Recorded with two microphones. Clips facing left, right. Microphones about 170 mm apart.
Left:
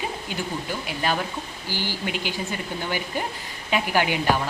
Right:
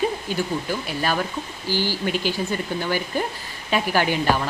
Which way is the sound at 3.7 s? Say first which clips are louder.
Right 2 dB; 15° left (ahead or behind).